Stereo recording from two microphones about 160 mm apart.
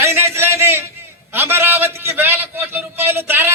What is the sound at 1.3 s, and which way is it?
A man's voice, 15° right (ahead or behind).